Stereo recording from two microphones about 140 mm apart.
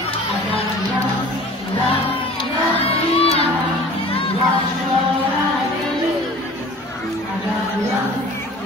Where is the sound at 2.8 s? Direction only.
45° left (ahead or behind).